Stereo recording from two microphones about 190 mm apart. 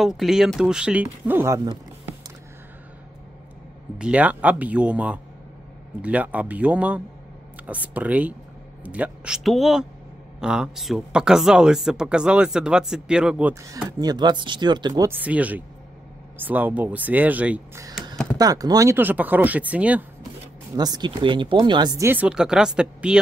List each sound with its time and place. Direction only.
0.0 s speech: centre (ahead or behind); by 1.8 s 20° right (ahead or behind)
4.0 s speech: 5° right (ahead or behind)
18.1 s chop: 5° left (ahead or behind)
18.4 s speech: 20° right (ahead or behind)
20.7 s speech: 20° right (ahead or behind); by 23.2 s 5° right (ahead or behind)